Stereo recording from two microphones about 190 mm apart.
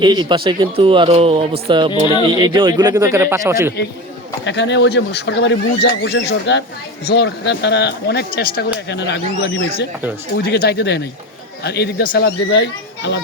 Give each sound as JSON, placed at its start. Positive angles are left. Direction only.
{"t": 0.0, "sound": "speech", "side_deg": -25}
{"t": 4.4, "sound": "speech", "side_deg": 70}